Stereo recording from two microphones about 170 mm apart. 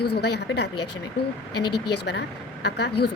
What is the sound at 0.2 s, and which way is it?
Speech, 75° left (ahead or behind).